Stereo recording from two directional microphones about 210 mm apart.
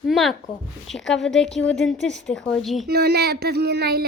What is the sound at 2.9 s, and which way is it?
Speech, 50° right (ahead or behind).